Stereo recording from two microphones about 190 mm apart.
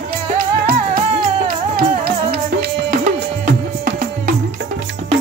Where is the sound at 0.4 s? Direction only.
50° right (ahead or behind).